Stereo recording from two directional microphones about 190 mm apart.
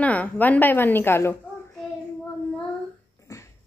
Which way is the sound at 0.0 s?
10° left (ahead or behind).